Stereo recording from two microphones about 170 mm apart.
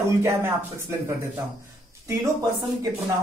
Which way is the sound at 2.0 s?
20° right (ahead or behind).